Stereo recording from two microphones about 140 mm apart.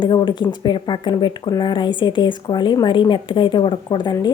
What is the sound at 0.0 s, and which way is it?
A woman's voice, 35° left (ahead or behind).